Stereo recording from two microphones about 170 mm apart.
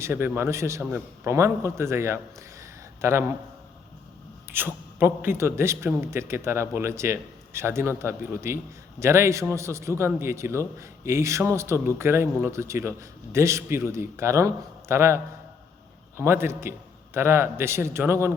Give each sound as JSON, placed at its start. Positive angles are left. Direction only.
{"t": 0.0, "sound": "a man's voice", "side_deg": -15}
{"t": 4.5, "sound": "a man's voice", "side_deg": -10}